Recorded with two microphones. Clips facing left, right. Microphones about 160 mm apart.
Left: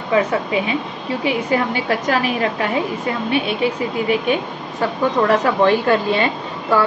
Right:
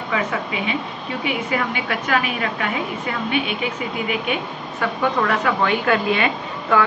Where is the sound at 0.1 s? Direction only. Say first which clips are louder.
Left 7 dB; 35° left (ahead or behind).